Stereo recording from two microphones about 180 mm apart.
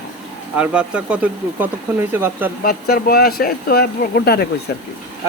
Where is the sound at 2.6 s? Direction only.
60° left (ahead or behind).